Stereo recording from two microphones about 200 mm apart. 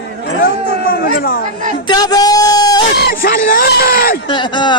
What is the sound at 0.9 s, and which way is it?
Speech, 45° left (ahead or behind).